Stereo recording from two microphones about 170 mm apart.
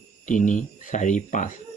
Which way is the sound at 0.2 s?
50° left (ahead or behind).